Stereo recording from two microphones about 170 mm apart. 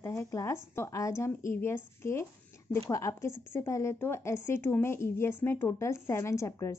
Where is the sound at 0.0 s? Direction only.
15° left (ahead or behind).